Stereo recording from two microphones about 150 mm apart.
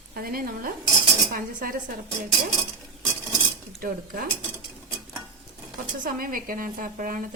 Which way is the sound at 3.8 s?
70° right (ahead or behind).